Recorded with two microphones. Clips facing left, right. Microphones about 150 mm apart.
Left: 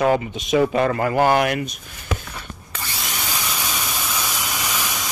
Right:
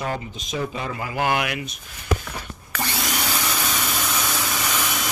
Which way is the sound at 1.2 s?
40° left (ahead or behind).